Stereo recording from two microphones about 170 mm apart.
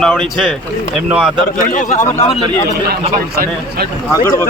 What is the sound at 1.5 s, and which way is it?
Speech, 50° left (ahead or behind).